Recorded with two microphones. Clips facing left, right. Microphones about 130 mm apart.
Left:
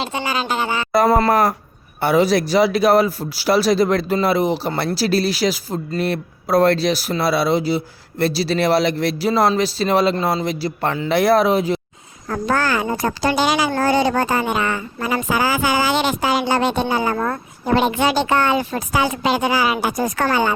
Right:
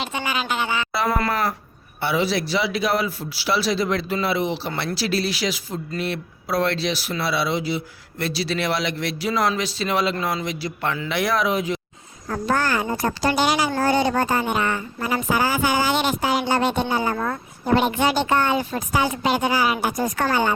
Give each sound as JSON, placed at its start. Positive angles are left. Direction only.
{"t": 0.0, "sound": "a woman's voice", "side_deg": 30}
{"t": 12.3, "sound": "speech", "side_deg": 90}
{"t": 13.7, "sound": "speech", "side_deg": 80}